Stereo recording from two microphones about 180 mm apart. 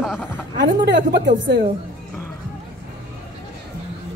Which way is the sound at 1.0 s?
50° right (ahead or behind).